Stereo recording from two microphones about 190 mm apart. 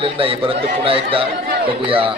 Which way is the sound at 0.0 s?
30° right (ahead or behind).